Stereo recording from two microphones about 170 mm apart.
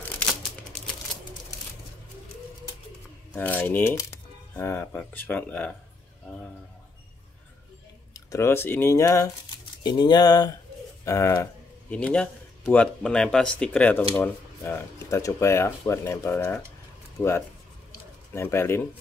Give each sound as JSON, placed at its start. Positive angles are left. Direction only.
{"t": 3.3, "sound": "speech", "side_deg": 10}
{"t": 8.1, "sound": "speech", "side_deg": 20}